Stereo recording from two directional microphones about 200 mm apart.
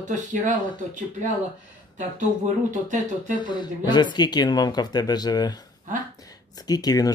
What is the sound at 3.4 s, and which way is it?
Speech, 20° left (ahead or behind).